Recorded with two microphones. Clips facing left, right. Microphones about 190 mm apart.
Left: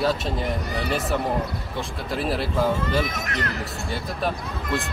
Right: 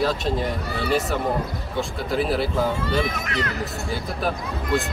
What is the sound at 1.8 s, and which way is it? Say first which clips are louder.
Speech: right 5 dB; centre (ahead or behind).